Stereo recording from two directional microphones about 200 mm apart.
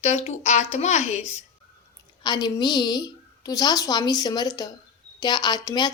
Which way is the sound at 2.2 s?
20° left (ahead or behind).